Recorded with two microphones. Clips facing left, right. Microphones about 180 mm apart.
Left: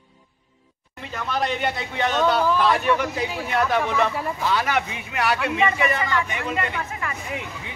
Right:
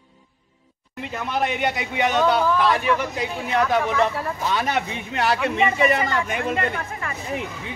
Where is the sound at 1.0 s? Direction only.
15° right (ahead or behind).